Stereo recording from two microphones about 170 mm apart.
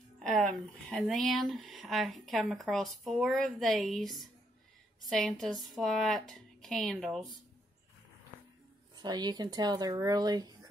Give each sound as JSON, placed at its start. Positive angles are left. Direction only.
{"t": 0.2, "sound": "speech", "side_deg": 0}
{"t": 8.9, "sound": "speech", "side_deg": -25}